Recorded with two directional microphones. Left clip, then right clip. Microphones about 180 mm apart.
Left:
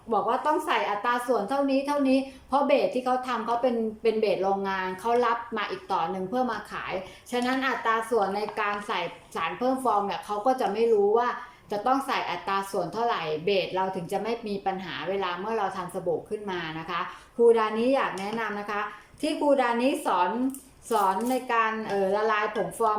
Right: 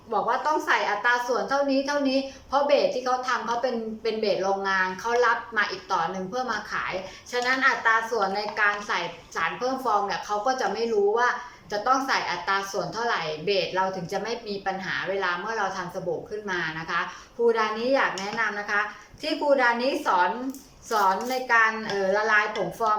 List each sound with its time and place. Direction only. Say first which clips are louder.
0.1 s a woman's voice: right 1 dB; 20° left (ahead or behind)